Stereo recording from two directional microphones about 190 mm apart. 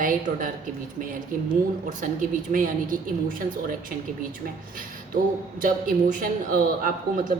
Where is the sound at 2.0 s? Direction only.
45° right (ahead or behind).